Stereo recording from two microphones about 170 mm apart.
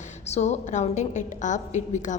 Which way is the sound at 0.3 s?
40° left (ahead or behind).